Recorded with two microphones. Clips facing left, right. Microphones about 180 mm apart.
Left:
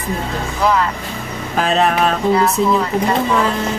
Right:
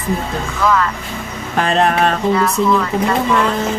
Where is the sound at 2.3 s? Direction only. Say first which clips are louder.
Even; 30° left (ahead or behind).